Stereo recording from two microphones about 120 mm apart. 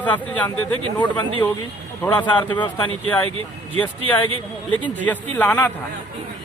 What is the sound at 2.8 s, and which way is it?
Speech, 15° left (ahead or behind).